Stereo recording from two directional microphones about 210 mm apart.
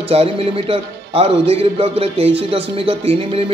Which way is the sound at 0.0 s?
30° right (ahead or behind).